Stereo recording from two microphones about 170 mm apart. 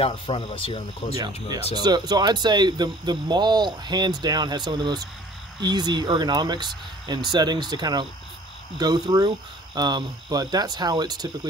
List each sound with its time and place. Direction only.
0.0 s speech: 35° left (ahead or behind)
1.1 s speech: 25° right (ahead or behind)